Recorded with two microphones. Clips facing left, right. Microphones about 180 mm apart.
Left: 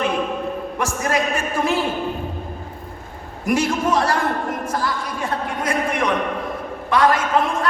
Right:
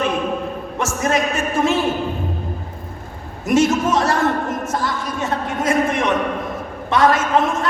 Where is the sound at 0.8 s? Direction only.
25° right (ahead or behind).